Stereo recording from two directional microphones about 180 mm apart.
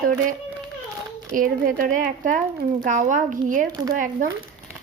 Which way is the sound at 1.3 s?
50° right (ahead or behind).